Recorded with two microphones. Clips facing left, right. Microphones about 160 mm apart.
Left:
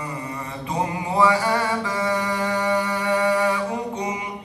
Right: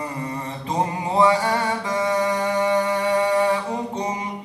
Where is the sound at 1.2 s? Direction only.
25° right (ahead or behind).